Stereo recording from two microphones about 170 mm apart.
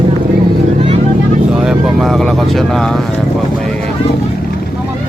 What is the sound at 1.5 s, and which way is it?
Vehicle, centre (ahead or behind).